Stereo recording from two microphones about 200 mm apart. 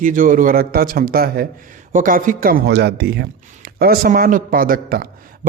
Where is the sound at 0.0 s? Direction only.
40° right (ahead or behind).